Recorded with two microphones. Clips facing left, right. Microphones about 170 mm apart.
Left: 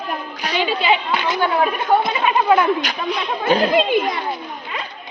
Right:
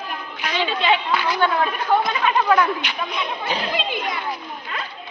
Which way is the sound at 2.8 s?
50° left (ahead or behind).